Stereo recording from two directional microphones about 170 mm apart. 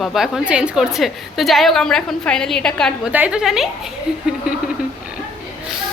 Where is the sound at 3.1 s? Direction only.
10° right (ahead or behind).